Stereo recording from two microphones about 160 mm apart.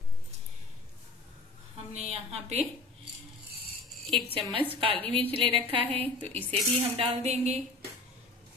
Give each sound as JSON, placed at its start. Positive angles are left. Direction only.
{"t": 2.0, "sound": "a woman's voice", "side_deg": -40}
{"t": 4.3, "sound": "a woman's voice", "side_deg": -35}